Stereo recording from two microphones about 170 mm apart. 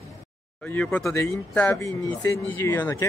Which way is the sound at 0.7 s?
10° left (ahead or behind).